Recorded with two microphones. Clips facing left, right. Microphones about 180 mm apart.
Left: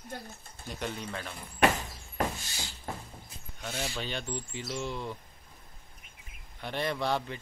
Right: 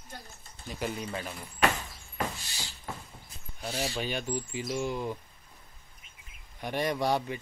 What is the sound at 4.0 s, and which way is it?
Speech, 10° right (ahead or behind).